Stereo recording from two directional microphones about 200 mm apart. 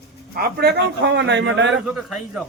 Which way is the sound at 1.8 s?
5° right (ahead or behind).